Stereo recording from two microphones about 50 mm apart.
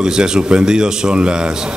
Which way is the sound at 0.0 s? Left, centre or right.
Centre.